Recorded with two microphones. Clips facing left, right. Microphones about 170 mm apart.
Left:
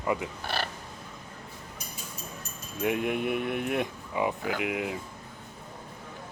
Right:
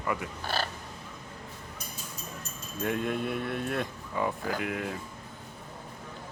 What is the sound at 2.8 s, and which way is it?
Speech, 15° left (ahead or behind).